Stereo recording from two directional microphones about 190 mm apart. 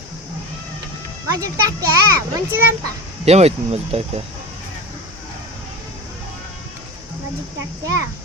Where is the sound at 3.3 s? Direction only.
35° right (ahead or behind).